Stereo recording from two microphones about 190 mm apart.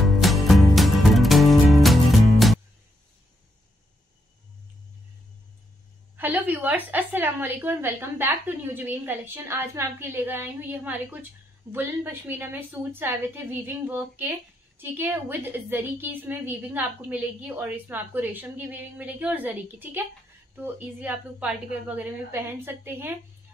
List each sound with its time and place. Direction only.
0.0 s music: centre (ahead or behind)
6.1 s a woman's voice: 10° right (ahead or behind)